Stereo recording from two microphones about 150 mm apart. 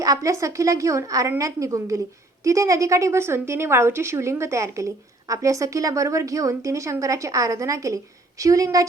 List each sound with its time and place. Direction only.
0.0 s a woman's voice: 20° right (ahead or behind)